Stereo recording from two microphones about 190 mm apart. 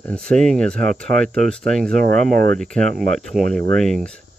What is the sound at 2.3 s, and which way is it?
Speech, 45° right (ahead or behind).